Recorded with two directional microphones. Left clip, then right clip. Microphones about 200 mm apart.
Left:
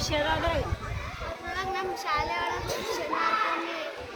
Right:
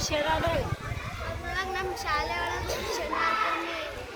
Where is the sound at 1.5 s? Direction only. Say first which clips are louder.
Even; 5° left (ahead or behind).